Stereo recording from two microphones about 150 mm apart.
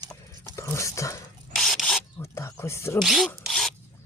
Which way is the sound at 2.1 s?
20° left (ahead or behind).